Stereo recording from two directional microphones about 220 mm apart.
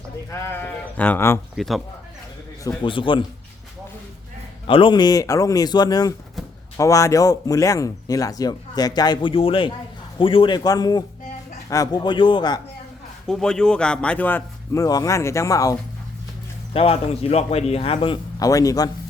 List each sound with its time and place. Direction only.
0.3 s speech: 10° left (ahead or behind)
2.6 s a man's voice: 25° left (ahead or behind)
4.6 s a man's voice: 25° left (ahead or behind)
13.2 s speech: 5° left (ahead or behind)
16.7 s a man's voice: 25° left (ahead or behind)